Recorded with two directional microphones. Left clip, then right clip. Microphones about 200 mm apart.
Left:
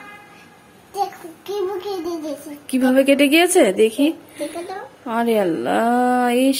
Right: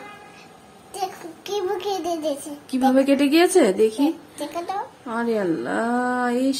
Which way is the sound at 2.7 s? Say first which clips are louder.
Left 3 dB; 5° left (ahead or behind).